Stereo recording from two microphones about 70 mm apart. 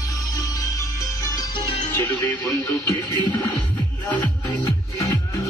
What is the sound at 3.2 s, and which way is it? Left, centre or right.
Music, left.